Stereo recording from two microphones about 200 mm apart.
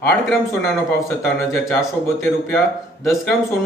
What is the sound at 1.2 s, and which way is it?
Speech, 5° left (ahead or behind).